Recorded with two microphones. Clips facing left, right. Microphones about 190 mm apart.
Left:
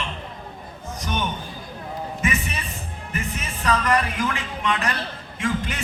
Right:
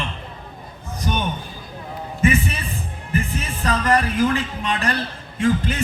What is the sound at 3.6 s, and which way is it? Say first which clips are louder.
Music: right 2 dB; 35° right (ahead or behind).